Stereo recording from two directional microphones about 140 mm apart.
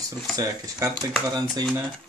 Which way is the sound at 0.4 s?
25° right (ahead or behind).